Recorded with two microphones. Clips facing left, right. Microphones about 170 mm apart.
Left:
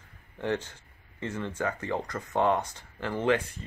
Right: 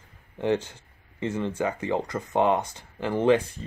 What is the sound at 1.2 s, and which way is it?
Speech, 20° right (ahead or behind).